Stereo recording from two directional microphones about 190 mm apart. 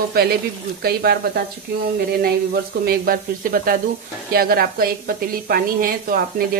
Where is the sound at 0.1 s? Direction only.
55° right (ahead or behind).